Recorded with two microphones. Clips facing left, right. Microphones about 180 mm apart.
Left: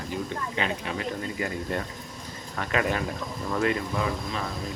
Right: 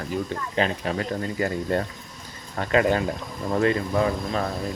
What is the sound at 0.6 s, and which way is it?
Speech, 40° right (ahead or behind).